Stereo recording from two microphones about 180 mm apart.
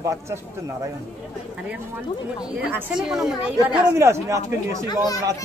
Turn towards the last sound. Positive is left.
turn(degrees=20)  # may be behind; listen again after turning